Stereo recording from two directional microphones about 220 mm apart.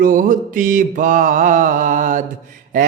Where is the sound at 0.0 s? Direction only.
40° right (ahead or behind).